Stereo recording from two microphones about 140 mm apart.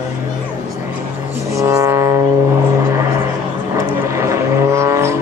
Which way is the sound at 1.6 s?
20° right (ahead or behind).